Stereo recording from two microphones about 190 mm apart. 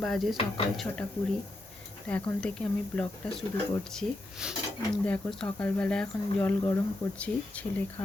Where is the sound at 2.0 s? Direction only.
5° left (ahead or behind).